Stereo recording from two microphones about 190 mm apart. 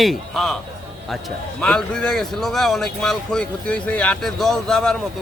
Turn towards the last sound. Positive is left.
turn(degrees=5)  # may be behind; listen again after turning